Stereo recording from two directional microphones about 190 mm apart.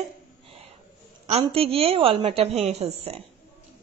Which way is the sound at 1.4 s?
30° right (ahead or behind).